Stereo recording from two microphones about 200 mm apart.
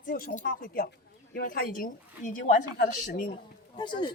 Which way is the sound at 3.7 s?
20° left (ahead or behind).